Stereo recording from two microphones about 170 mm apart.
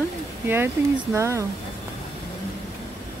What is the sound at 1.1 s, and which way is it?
Speech, 15° right (ahead or behind).